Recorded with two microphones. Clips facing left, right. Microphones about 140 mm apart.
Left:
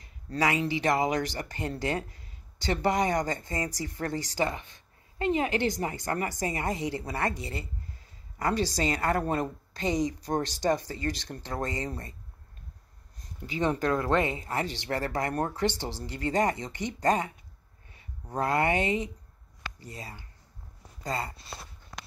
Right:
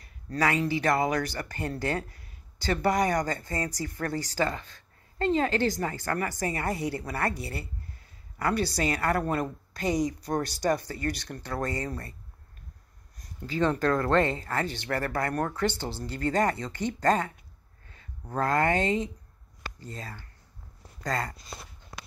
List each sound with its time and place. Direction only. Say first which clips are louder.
0.0 s speech: right 1 dB; 20° left (ahead or behind)
13.2 s speech: right 2 dB; 20° left (ahead or behind)
18.4 s speech: right 1 dB; 15° left (ahead or behind)